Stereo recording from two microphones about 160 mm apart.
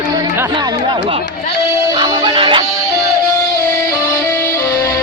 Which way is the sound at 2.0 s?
30° right (ahead or behind).